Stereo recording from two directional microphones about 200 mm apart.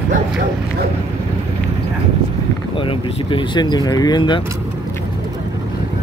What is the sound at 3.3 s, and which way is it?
Speech, 25° left (ahead or behind).